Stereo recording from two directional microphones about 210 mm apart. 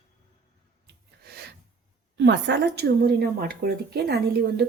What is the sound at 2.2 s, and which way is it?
Speech, 55° right (ahead or behind).